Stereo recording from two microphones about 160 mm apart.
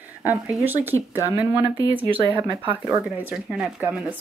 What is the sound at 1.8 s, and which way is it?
Speech, 35° right (ahead or behind).